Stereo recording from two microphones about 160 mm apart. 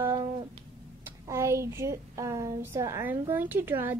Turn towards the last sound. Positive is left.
turn(degrees=-15)  # may be behind; listen again after turning